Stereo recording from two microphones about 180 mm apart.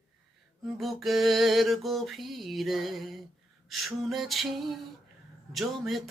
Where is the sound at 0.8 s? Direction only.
Centre (ahead or behind).